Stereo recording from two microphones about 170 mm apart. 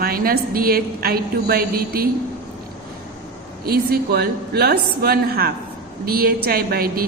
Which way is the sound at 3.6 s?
65° right (ahead or behind).